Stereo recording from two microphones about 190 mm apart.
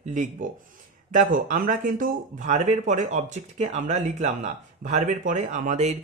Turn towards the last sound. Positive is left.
turn(degrees=-40)  # may be behind; listen again after turning